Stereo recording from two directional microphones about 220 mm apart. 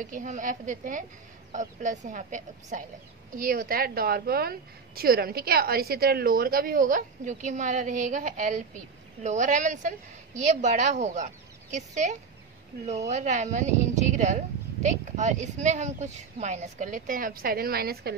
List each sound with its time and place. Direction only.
0.0 s a woman's voice: 35° right (ahead or behind)